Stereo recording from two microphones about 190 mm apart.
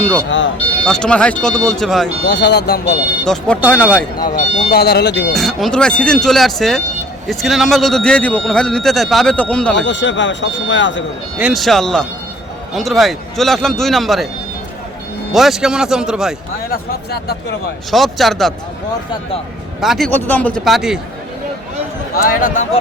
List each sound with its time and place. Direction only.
0.3 s speech: 80° left
0.9 s speech: 5° left (ahead or behind)
2.2 s speech: 65° left (ahead or behind)
3.2 s speech: 5° left (ahead or behind)
4.2 s speech: 50° left (ahead or behind); by 5.3 s 65° left (ahead or behind)
5.3 s speech: centre (ahead or behind)
9.8 s speech: 70° left (ahead or behind)
11.3 s speech: 5° right (ahead or behind)
15.3 s speech: centre (ahead or behind)
16.6 s speech: 55° left (ahead or behind)
17.9 s speech: centre (ahead or behind)
19.8 s speech: centre (ahead or behind)
22.1 s a man's voice: 50° left (ahead or behind)